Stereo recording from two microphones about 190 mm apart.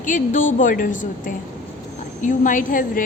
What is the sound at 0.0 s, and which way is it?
A woman's voice, 40° left (ahead or behind).